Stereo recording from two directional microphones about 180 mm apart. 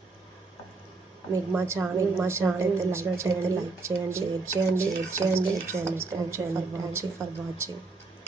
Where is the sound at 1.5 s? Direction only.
15° right (ahead or behind).